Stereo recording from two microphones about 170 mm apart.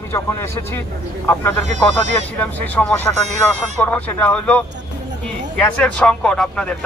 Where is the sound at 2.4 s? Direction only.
10° left (ahead or behind).